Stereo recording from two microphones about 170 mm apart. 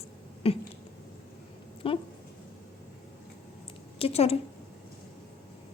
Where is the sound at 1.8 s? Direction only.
30° left (ahead or behind).